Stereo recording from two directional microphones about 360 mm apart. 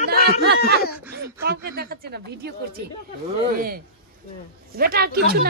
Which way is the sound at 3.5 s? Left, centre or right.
Right.